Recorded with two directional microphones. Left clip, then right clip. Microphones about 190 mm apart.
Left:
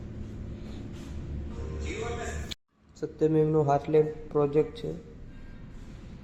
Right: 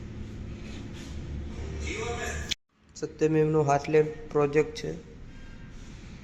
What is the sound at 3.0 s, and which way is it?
A man's voice, centre (ahead or behind).